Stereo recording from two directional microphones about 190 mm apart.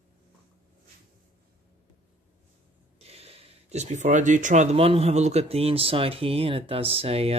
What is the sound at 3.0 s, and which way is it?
Speech, 30° right (ahead or behind).